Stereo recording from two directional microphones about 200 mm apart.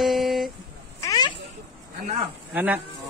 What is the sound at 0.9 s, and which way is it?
Cat, 20° left (ahead or behind).